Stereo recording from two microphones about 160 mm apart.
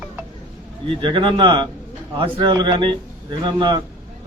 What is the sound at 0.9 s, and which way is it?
A man's voice, 30° right (ahead or behind).